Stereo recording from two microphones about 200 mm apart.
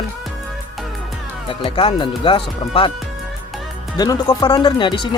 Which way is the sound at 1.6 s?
25° left (ahead or behind).